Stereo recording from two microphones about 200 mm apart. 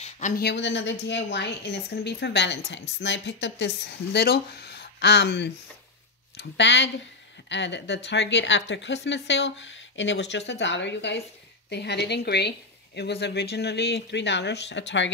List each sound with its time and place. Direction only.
0.4 s a woman's voice: 60° left (ahead or behind)